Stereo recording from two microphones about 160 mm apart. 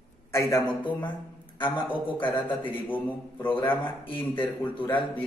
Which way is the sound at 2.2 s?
10° left (ahead or behind).